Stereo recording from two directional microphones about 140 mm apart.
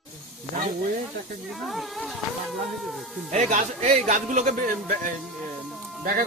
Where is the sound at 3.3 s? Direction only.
60° right (ahead or behind).